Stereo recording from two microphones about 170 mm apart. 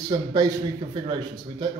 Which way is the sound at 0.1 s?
25° right (ahead or behind).